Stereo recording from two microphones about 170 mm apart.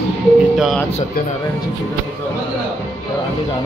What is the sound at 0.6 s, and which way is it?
Speech, centre (ahead or behind).